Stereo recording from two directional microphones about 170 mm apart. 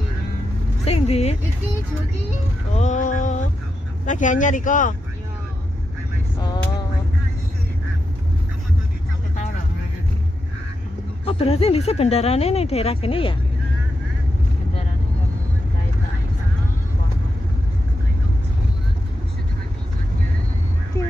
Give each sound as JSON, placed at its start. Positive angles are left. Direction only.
{"t": 0.8, "sound": "speech", "side_deg": 35}
{"t": 2.8, "sound": "a sound", "side_deg": 45}
{"t": 4.0, "sound": "speech", "side_deg": 45}
{"t": 11.2, "sound": "speech", "side_deg": 35}